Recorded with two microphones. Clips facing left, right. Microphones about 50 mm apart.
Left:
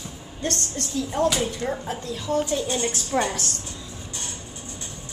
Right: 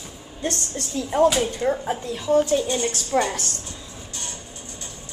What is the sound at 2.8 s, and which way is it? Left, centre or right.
Speech, centre.